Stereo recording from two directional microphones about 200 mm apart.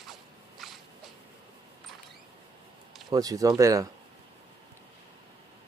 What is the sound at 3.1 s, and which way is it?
Speech, 15° right (ahead or behind).